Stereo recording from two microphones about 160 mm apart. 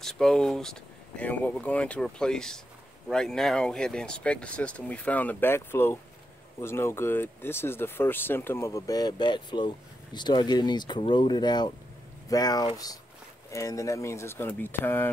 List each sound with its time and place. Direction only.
0.0 s speech: 5° left (ahead or behind)